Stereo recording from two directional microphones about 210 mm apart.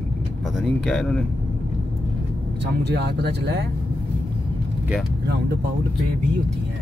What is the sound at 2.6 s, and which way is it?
Speech, 55° right (ahead or behind).